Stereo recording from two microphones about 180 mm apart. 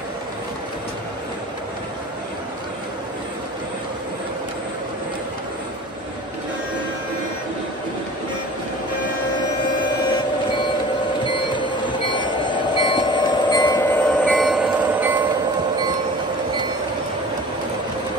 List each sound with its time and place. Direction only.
11.5 s train: 25° left (ahead or behind)
13.8 s train: 10° left (ahead or behind); by 15.1 s 5° right (ahead or behind)